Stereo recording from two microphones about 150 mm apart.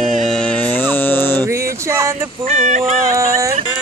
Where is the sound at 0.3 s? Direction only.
10° left (ahead or behind).